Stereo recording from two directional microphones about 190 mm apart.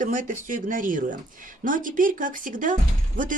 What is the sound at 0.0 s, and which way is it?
Speech, 45° right (ahead or behind).